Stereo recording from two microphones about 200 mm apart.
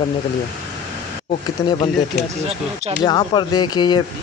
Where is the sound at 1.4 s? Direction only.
20° left (ahead or behind).